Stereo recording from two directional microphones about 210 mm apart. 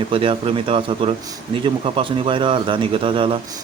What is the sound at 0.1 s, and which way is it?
Speech, 25° right (ahead or behind).